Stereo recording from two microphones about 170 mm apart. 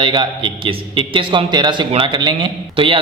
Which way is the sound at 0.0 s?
30° right (ahead or behind).